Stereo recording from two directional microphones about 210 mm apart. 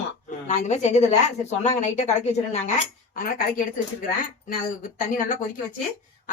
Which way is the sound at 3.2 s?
45° left (ahead or behind).